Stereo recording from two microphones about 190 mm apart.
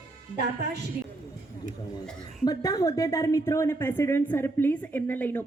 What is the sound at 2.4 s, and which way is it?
A woman's voice, 20° left (ahead or behind).